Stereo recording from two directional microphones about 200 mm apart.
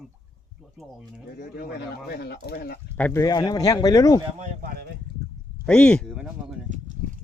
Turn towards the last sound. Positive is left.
turn(degrees=-5)  # may be behind; listen again after turning